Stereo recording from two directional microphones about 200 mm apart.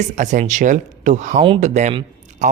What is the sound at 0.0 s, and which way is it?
Speech, 35° right (ahead or behind).